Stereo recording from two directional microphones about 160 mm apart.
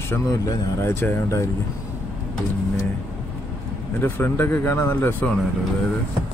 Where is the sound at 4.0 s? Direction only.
15° left (ahead or behind).